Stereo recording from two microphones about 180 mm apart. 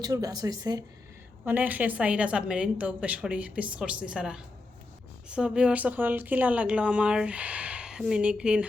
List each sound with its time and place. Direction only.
0.0 s speech: 20° right (ahead or behind)